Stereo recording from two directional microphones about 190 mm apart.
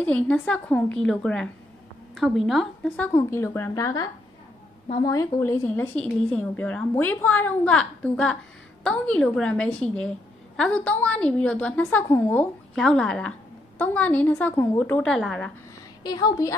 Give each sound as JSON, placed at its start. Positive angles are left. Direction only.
{"t": 0.0, "sound": "a woman's voice", "side_deg": 5}
{"t": 3.2, "sound": "a woman's voice", "side_deg": 15}
{"t": 6.0, "sound": "a woman's voice", "side_deg": 5}
{"t": 16.0, "sound": "a woman's voice", "side_deg": 20}